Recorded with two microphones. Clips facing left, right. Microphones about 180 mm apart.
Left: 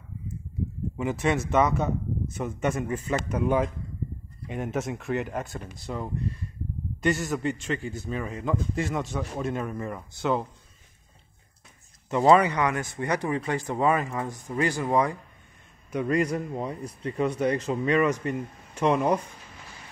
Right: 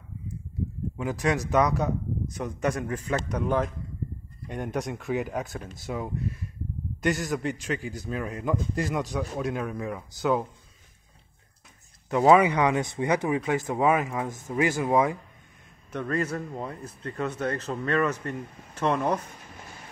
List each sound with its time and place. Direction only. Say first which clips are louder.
0.9 s speech: left 1 dB; 5° left (ahead or behind)
12.1 s speech: right 1 dB; 5° right (ahead or behind)
15.9 s speech: left 4 dB; 10° left (ahead or behind)